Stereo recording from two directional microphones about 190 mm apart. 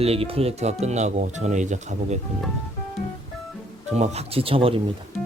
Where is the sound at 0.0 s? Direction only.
30° right (ahead or behind).